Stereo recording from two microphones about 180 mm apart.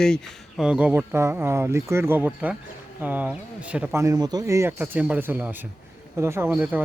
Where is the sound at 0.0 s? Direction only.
5° left (ahead or behind).